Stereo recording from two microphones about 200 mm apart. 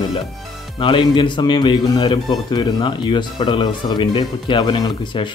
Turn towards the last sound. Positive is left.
turn(degrees=25)  # may be behind; listen again after turning